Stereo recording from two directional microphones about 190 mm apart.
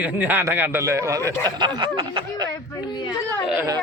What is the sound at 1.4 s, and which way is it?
Snicker, 20° right (ahead or behind).